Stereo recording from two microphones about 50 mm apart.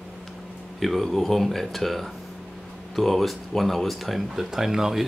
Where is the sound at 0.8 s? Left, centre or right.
Centre.